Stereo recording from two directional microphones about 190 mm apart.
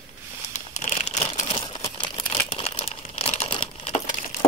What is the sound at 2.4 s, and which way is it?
Crumpling, 30° left (ahead or behind).